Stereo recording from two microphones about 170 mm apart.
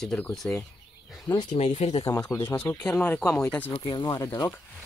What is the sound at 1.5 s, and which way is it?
Speech, 40° left (ahead or behind).